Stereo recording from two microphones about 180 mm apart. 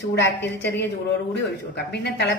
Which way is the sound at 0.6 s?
70° left (ahead or behind).